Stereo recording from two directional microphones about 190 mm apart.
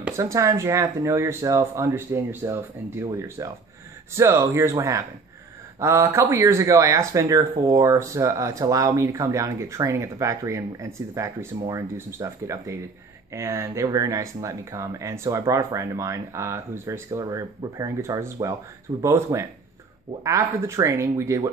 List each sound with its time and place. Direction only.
0.0 s speech: 15° right (ahead or behind)